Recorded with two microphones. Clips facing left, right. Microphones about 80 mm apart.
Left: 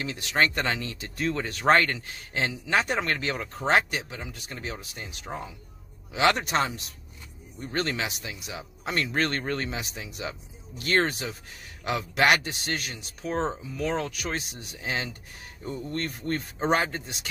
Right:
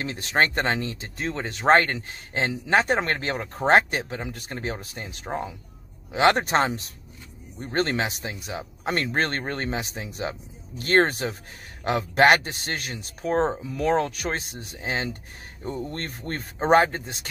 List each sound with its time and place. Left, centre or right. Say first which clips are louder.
0.0 s speech: right 2 dB; right